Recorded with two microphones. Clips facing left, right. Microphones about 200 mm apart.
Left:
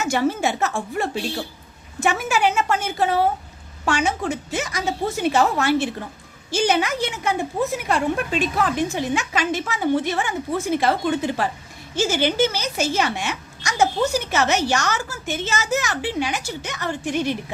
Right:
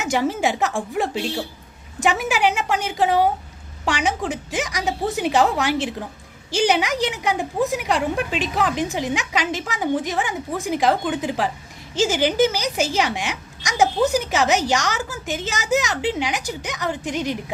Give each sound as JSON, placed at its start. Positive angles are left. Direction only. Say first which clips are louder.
{"t": 0.0, "sound": "a woman's voice", "louder": "even", "side_deg": -15}